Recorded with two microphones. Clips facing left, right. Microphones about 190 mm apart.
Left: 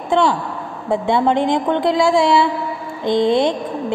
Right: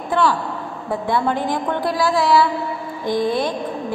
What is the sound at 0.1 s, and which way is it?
A woman's voice, 20° left (ahead or behind).